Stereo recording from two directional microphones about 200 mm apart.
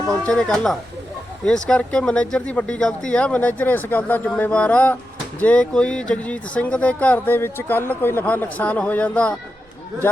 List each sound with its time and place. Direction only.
0.1 s speech: 5° left (ahead or behind)